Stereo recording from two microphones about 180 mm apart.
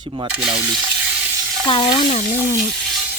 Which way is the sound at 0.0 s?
30° right (ahead or behind).